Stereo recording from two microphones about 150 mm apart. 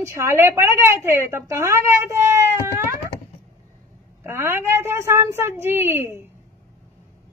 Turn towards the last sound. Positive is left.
turn(degrees=-15)  # may be behind; listen again after turning